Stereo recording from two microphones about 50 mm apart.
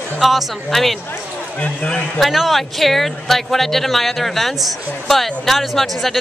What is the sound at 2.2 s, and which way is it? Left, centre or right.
Speech, centre.